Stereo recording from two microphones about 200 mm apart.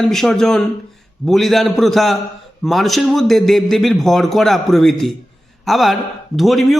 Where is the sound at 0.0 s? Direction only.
Centre (ahead or behind).